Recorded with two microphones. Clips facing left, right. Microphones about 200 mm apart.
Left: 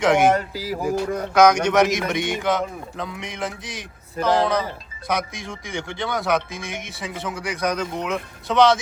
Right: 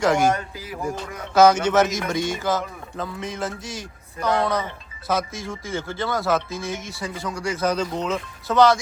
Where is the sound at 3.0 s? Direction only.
15° left (ahead or behind).